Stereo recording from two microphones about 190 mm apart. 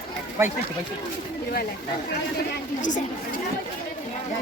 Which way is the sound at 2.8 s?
40° left (ahead or behind).